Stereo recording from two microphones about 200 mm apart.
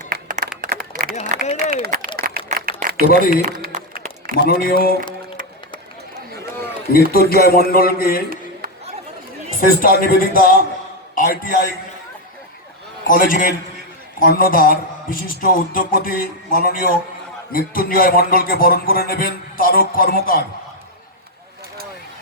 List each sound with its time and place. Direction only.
0.0 s clapping: 45° right (ahead or behind)
0.6 s a sound: 45° right (ahead or behind)
1.7 s speech: 45° right (ahead or behind)
2.1 s a sound: 50° right (ahead or behind)
4.4 s a man's voice: 50° left (ahead or behind)
6.9 s a man's voice: 50° left (ahead or behind)
9.6 s a man's voice: 45° left (ahead or behind)
13.1 s a man's voice: 45° left (ahead or behind)